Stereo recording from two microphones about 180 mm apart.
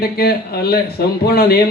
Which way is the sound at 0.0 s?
60° left (ahead or behind).